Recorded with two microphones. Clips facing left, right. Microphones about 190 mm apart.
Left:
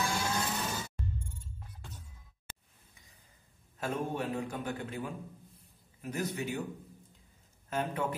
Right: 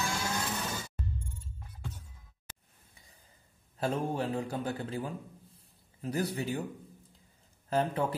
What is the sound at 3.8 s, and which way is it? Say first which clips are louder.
A man's voice: right 3 dB; 30° right (ahead or behind).